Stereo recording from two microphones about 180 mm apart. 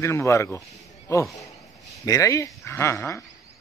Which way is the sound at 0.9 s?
15° left (ahead or behind).